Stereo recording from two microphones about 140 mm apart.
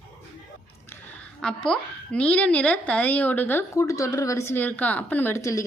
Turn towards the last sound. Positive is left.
turn(degrees=20)  # may be behind; listen again after turning